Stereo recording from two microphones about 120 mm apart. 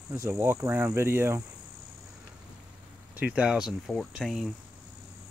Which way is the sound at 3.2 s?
10° right (ahead or behind).